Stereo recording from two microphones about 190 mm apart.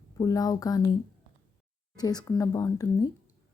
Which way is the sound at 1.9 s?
20° left (ahead or behind).